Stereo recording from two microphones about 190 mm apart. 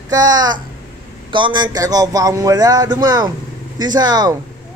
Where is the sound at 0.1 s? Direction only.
20° right (ahead or behind).